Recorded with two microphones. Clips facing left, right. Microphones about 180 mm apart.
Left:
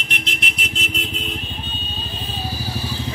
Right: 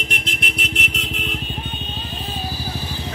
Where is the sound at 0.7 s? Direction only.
75° right (ahead or behind).